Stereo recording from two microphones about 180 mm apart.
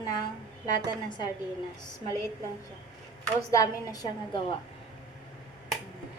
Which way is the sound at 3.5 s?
20° left (ahead or behind).